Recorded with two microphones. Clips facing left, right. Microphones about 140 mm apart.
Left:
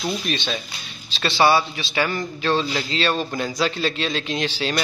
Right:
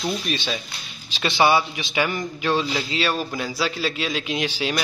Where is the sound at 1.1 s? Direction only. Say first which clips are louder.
Left 1 dB; 15° right (ahead or behind).